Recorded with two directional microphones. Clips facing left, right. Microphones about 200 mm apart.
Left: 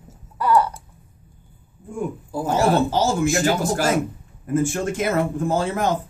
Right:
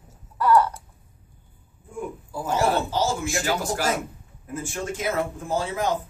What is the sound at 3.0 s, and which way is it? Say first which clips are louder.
Speech: left 6 dB; 50° left (ahead or behind).